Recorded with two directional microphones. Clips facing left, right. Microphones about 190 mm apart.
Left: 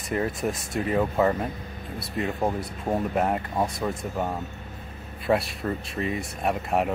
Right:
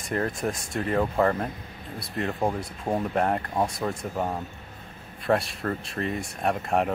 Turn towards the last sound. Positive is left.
turn(degrees=0)  # may be behind; listen again after turning